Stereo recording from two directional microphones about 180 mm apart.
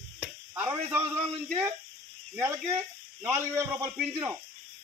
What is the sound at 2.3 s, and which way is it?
Speech, 15° right (ahead or behind).